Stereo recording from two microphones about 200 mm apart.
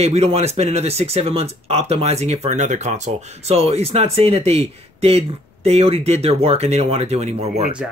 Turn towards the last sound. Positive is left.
turn(degrees=-35)  # may be behind; listen again after turning